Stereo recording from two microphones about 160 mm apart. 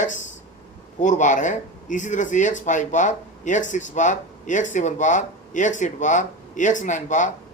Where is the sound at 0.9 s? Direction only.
50° left (ahead or behind).